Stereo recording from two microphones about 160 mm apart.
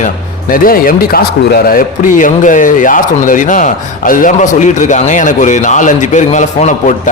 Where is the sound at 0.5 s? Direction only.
60° left (ahead or behind).